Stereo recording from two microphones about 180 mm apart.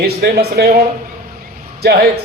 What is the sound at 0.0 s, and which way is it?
Speech, 60° right (ahead or behind).